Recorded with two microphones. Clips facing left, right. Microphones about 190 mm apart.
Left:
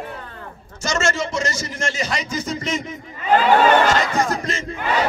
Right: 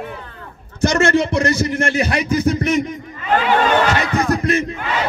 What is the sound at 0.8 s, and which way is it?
A man's voice, 60° right (ahead or behind).